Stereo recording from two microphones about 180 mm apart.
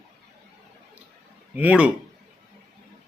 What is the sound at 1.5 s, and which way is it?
Speech, 10° right (ahead or behind).